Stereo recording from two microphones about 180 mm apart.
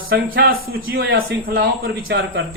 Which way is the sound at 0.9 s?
75° right (ahead or behind).